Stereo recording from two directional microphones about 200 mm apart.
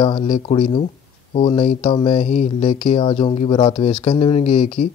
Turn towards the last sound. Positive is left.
turn(degrees=30)  # may be behind; listen again after turning